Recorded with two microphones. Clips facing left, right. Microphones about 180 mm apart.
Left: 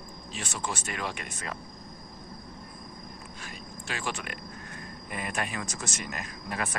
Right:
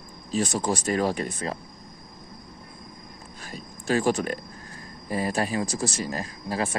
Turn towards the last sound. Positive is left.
turn(degrees=-30)  # may be behind; listen again after turning